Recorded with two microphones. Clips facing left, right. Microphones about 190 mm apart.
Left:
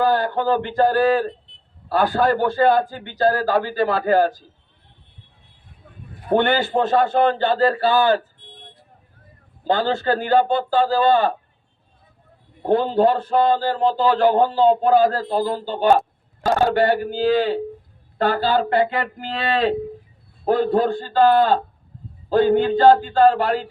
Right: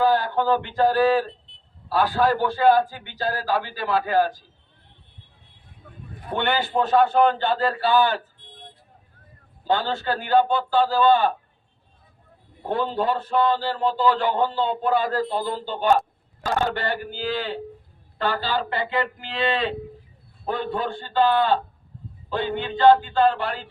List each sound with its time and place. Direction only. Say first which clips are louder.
0.0 s speech: left 1 dB; 50° left (ahead or behind)
6.3 s speech: left 5 dB; 45° left (ahead or behind)
9.6 s speech: left 4 dB; 45° left (ahead or behind)
12.6 s a man's voice: left 7 dB; 45° left (ahead or behind)